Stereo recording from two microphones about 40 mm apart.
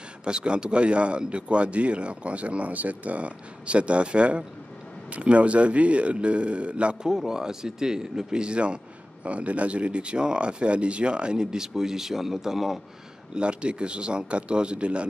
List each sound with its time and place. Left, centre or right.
0.2 s a man's voice: right
7.1 s a man's voice: centre
13.3 s a man's voice: right